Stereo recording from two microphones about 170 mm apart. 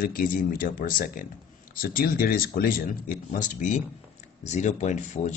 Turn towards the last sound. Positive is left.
turn(degrees=45)  # may be behind; listen again after turning